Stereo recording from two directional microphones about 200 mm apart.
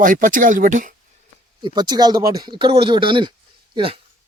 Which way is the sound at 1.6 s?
20° right (ahead or behind).